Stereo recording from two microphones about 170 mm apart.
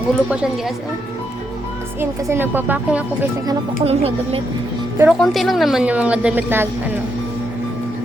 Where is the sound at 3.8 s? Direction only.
35° right (ahead or behind).